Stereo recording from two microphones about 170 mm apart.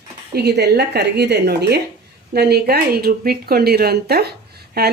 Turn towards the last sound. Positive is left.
turn(degrees=-70)  # may be behind; listen again after turning